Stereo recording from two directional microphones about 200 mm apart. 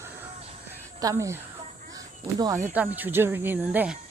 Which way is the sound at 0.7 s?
15° right (ahead or behind).